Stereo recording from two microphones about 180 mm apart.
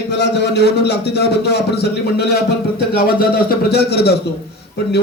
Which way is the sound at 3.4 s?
65° left (ahead or behind).